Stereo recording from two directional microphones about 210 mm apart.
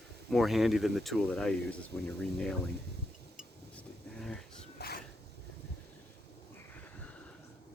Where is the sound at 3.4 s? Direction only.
Centre (ahead or behind).